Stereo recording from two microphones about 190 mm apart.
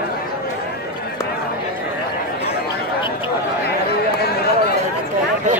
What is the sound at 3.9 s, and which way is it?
Chatter, 55° left (ahead or behind).